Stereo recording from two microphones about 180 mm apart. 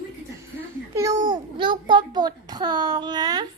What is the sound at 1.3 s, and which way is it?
A child's voice, 25° right (ahead or behind).